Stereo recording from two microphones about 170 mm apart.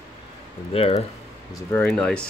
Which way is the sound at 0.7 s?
35° left (ahead or behind).